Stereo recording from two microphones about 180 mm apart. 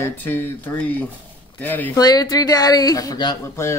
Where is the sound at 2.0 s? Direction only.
20° left (ahead or behind).